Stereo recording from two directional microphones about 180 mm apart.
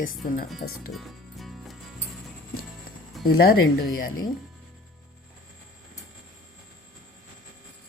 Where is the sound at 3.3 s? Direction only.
55° left (ahead or behind).